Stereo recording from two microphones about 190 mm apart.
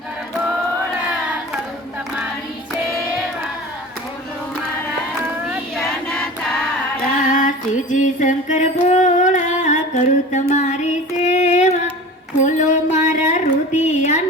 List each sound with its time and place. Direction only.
5.2 s choir: centre (ahead or behind)
7.3 s music: 45° left (ahead or behind)
11.2 s female singing: 40° left (ahead or behind)
12.4 s a sound: 40° left (ahead or behind)